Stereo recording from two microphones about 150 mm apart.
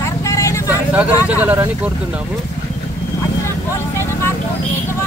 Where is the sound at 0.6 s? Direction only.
10° right (ahead or behind).